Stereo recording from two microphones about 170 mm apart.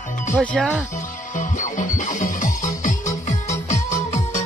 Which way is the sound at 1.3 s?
50° left (ahead or behind).